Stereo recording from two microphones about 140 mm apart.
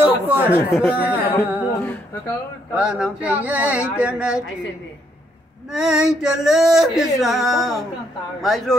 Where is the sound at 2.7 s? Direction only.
5° right (ahead or behind).